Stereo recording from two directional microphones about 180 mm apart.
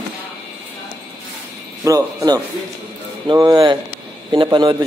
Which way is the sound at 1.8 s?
20° right (ahead or behind).